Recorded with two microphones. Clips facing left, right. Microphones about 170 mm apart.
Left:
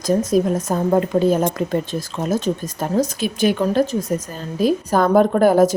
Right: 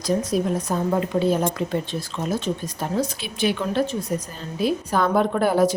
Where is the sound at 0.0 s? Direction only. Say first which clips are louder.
Left 5 dB; 45° left (ahead or behind).